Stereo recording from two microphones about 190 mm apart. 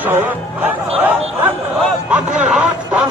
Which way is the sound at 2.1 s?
5° right (ahead or behind).